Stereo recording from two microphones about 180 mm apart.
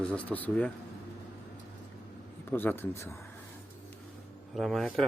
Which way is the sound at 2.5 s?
10° left (ahead or behind).